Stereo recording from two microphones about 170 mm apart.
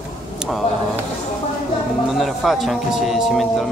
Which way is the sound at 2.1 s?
Centre (ahead or behind).